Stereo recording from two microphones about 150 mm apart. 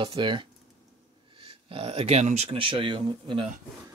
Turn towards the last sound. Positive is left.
turn(degrees=-35)  # may be behind; listen again after turning